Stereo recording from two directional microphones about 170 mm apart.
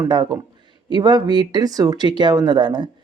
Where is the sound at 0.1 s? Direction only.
25° right (ahead or behind).